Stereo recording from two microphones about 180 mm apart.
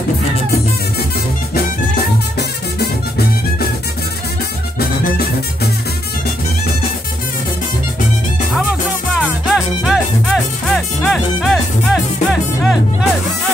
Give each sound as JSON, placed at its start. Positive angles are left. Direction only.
{"t": 2.3, "sound": "music", "side_deg": 60}
{"t": 4.7, "sound": "music", "side_deg": 60}
{"t": 9.1, "sound": "music", "side_deg": 0}